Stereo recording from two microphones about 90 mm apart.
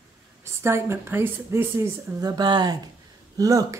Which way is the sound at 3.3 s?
40° right (ahead or behind).